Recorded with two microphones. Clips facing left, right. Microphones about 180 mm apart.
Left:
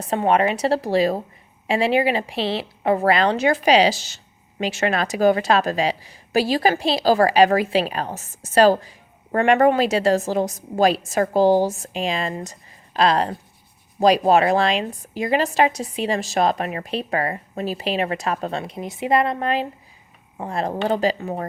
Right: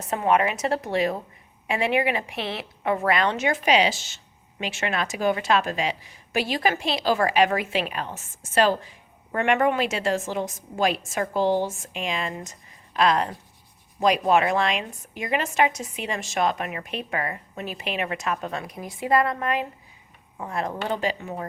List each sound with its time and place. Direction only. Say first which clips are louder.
0.1 s a woman's voice: left 3 dB; 30° left (ahead or behind)